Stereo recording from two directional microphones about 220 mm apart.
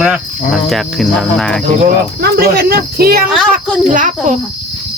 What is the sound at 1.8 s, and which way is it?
Speech, 45° right (ahead or behind).